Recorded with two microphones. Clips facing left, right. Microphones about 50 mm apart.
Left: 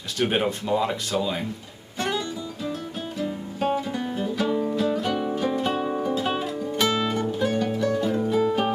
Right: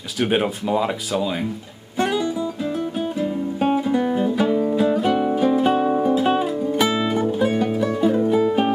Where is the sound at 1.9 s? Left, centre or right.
Centre.